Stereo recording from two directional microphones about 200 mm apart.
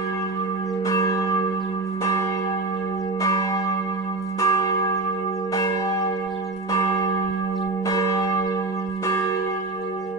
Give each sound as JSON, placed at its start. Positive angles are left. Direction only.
{"t": 0.8, "sound": "church bell", "side_deg": 15}
{"t": 3.2, "sound": "church bell", "side_deg": 15}